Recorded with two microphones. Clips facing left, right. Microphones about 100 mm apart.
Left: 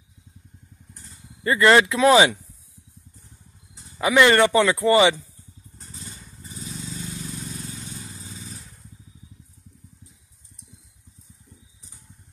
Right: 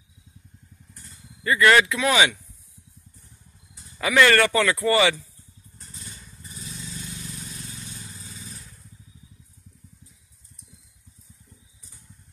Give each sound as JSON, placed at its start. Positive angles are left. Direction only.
{"t": 1.4, "sound": "speech", "side_deg": 30}
{"t": 3.7, "sound": "speech", "side_deg": 20}
{"t": 5.8, "sound": "vehicle", "side_deg": 30}
{"t": 7.2, "sound": "vehicle", "side_deg": 30}